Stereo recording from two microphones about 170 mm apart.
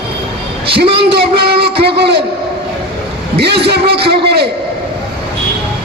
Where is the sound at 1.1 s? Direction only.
70° right (ahead or behind).